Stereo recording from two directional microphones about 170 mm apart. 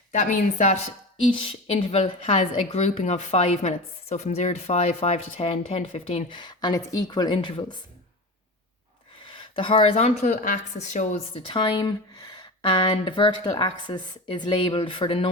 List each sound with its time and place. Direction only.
0.1 s speech: 45° left (ahead or behind)
1.3 s a woman's voice: 30° left (ahead or behind)
9.3 s speech: 30° left (ahead or behind)
11.4 s speech: 30° left (ahead or behind)